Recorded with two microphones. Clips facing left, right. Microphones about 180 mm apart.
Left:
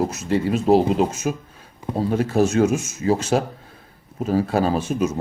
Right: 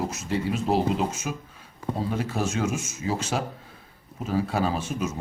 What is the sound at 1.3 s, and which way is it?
Speech, 40° left (ahead or behind).